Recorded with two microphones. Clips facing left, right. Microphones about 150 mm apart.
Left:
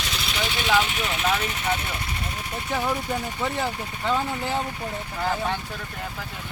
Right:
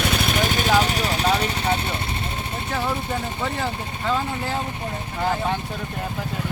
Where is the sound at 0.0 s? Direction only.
55° right (ahead or behind); by 2.6 s 30° right (ahead or behind).